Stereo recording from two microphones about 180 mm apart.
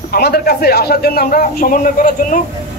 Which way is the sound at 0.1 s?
55° left (ahead or behind).